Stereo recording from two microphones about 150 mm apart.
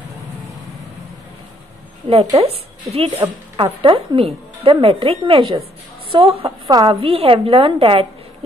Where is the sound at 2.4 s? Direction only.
40° right (ahead or behind).